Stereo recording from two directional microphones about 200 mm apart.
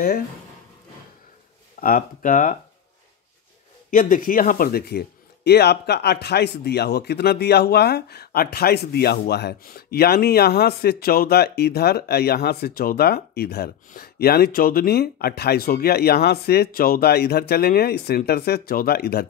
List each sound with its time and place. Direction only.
1.8 s speech: 45° left (ahead or behind)
3.9 s speech: 45° left (ahead or behind)